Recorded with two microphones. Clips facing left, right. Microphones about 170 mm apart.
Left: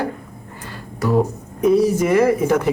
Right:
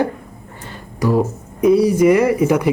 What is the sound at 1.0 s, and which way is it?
Speech, 5° right (ahead or behind).